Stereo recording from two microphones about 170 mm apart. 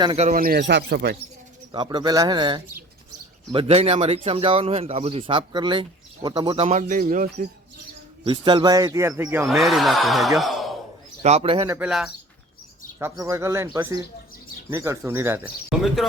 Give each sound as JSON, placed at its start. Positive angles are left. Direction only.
{"t": 0.2, "sound": "speech", "side_deg": -50}
{"t": 1.7, "sound": "a man's voice", "side_deg": -25}
{"t": 8.2, "sound": "a man's voice", "side_deg": -30}
{"t": 9.5, "sound": "speech", "side_deg": 0}
{"t": 11.2, "sound": "speech", "side_deg": -40}
{"t": 11.9, "sound": "speech", "side_deg": 0}
{"t": 13.0, "sound": "speech", "side_deg": -15}
{"t": 14.7, "sound": "speech", "side_deg": -15}